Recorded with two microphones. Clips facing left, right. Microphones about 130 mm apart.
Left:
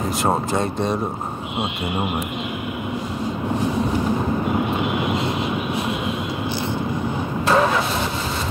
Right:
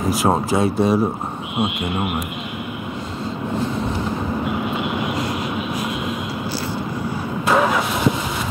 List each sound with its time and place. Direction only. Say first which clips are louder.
0.1 s speech: right 3 dB; 5° right (ahead or behind)
7.4 s vehicle: even; 10° right (ahead or behind)